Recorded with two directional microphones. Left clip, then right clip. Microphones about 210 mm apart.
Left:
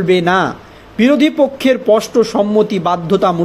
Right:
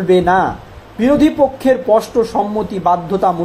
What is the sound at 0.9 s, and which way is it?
A man's voice, 45° left (ahead or behind).